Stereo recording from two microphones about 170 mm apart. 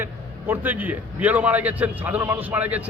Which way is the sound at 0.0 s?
10° right (ahead or behind).